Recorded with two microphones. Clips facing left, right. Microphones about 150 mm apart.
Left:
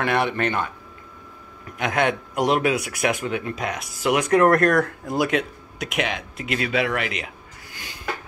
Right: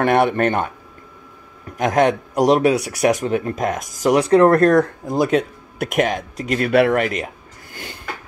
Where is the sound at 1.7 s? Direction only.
40° right (ahead or behind); by 5.2 s 25° right (ahead or behind).